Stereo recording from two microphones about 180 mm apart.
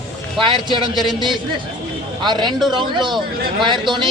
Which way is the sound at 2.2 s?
25° right (ahead or behind).